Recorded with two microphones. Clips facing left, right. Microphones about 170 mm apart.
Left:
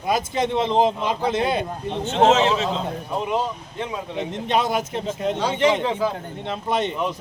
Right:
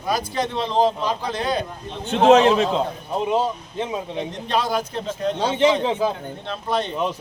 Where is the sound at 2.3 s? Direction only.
55° right (ahead or behind).